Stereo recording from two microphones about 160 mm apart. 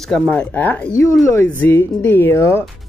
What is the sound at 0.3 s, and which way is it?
Speech, 10° left (ahead or behind).